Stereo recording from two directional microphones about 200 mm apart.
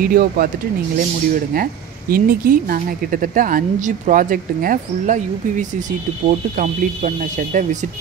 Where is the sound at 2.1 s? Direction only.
45° right (ahead or behind).